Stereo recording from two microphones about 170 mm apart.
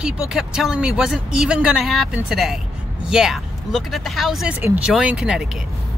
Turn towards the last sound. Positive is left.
turn(degrees=-5)  # may be behind; listen again after turning